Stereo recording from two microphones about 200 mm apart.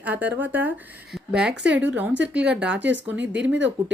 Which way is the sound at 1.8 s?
10° right (ahead or behind).